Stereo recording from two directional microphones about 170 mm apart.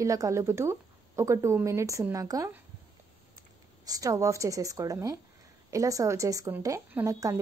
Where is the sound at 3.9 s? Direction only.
20° right (ahead or behind).